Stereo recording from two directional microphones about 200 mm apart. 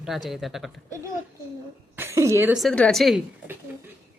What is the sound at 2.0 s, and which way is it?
Speech, 15° right (ahead or behind).